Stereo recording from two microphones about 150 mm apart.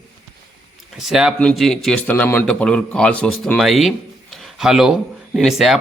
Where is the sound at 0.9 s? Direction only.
Centre (ahead or behind).